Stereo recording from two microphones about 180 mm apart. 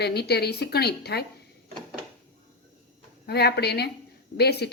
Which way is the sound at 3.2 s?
65° left (ahead or behind).